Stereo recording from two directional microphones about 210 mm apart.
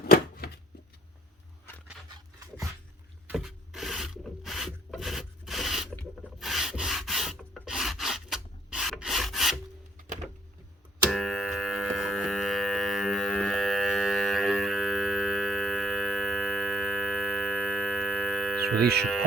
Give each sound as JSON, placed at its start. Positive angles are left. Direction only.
{"t": 0.1, "sound": "shuffling cards", "side_deg": 45}
{"t": 2.0, "sound": "dog", "side_deg": -20}
{"t": 3.2, "sound": "rub", "side_deg": 0}
{"t": 11.1, "sound": "music", "side_deg": 0}